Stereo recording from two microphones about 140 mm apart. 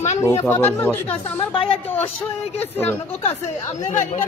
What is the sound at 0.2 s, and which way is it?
Speech, 20° left (ahead or behind).